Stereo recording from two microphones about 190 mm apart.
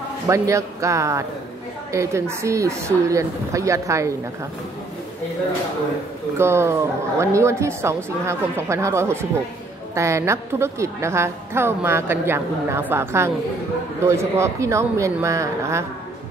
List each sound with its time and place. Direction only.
0.3 s a woman's voice: 15° right (ahead or behind)
6.3 s a woman's voice: 15° right (ahead or behind)